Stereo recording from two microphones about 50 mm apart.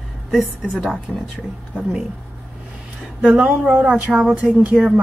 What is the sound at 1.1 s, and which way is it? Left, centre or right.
Speech, centre.